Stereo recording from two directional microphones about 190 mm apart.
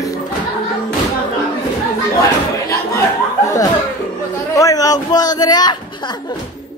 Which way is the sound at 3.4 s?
15° left (ahead or behind).